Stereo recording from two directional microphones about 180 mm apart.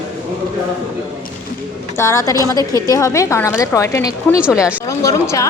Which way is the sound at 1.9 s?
15° left (ahead or behind).